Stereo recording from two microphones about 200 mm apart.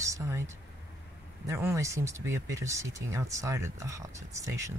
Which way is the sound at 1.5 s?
15° right (ahead or behind).